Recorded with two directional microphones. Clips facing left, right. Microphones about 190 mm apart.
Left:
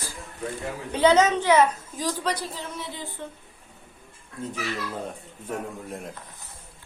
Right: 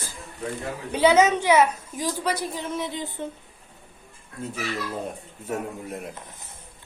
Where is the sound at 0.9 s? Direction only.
10° right (ahead or behind).